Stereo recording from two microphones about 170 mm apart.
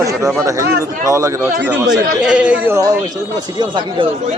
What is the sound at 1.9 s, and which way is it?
Speech, 5° right (ahead or behind).